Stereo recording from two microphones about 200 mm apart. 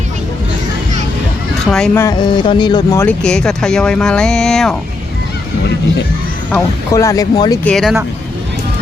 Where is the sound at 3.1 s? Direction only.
5° left (ahead or behind).